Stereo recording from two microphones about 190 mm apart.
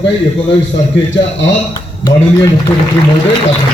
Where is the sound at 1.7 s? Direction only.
20° left (ahead or behind).